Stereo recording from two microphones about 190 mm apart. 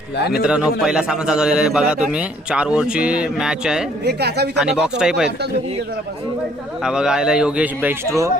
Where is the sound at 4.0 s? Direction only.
60° right (ahead or behind).